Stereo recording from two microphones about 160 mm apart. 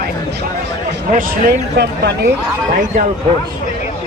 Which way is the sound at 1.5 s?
85° right.